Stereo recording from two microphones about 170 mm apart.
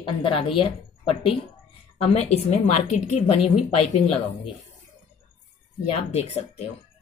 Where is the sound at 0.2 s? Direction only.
35° left (ahead or behind).